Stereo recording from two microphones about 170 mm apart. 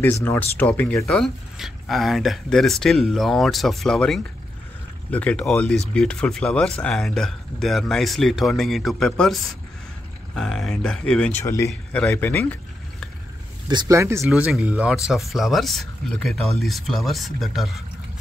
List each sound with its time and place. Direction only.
0.0 s speech: 10° left (ahead or behind)
11.4 s speech: 15° left (ahead or behind)
13.7 s speech: 20° right (ahead or behind); by 17.8 s centre (ahead or behind)